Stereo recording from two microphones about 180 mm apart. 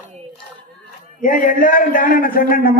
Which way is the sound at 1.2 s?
50° left (ahead or behind).